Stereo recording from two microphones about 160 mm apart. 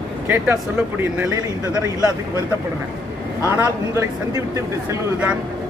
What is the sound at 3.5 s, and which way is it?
A man's voice, 20° right (ahead or behind).